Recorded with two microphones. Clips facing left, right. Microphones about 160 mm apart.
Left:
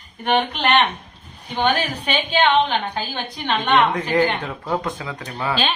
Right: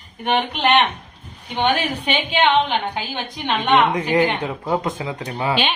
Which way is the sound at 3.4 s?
15° right (ahead or behind).